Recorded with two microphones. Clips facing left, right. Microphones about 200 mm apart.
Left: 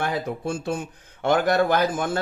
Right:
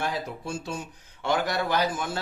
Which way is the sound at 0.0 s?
55° left (ahead or behind).